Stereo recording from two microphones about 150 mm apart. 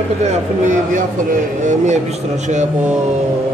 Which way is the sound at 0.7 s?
60° right (ahead or behind).